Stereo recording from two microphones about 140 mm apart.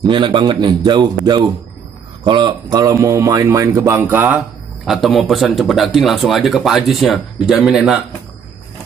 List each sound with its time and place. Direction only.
0.0 s a man's voice: 35° right (ahead or behind); by 4.4 s 15° right (ahead or behind)
4.8 s speech: centre (ahead or behind)